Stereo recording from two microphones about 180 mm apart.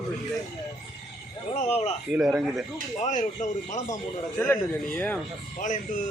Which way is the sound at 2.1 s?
Centre (ahead or behind).